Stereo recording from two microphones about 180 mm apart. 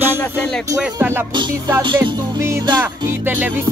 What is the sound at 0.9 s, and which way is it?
Music, 10° right (ahead or behind).